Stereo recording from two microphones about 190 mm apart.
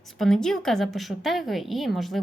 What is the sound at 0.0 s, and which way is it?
A woman's voice, centre (ahead or behind).